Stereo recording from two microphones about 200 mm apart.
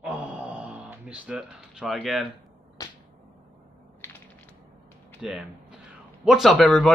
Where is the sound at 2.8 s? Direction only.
20° left (ahead or behind).